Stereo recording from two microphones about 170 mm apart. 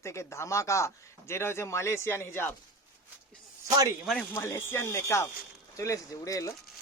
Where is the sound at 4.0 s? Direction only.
Centre (ahead or behind).